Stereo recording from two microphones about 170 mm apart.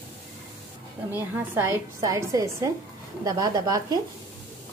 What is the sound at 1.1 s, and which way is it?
A woman's voice, 10° right (ahead or behind).